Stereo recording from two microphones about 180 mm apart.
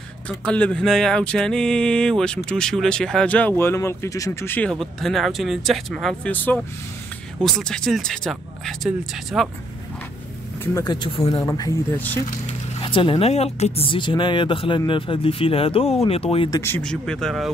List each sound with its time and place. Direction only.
0.5 s speech: 5° left (ahead or behind)
10.6 s speech: 20° left (ahead or behind)
12.0 s speech: 10° left (ahead or behind)
12.8 s speech: 30° left (ahead or behind)
16.4 s speech: 15° left (ahead or behind); by 17.5 s centre (ahead or behind)